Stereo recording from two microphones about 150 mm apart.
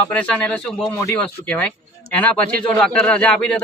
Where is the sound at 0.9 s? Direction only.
20° left (ahead or behind).